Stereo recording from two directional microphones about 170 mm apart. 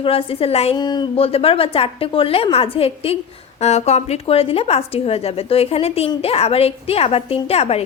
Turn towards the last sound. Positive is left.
turn(degrees=35)  # may be behind; listen again after turning